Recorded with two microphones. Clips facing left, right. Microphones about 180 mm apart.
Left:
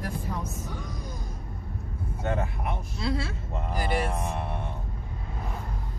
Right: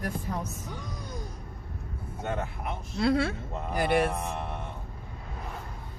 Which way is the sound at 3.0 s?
60° right (ahead or behind).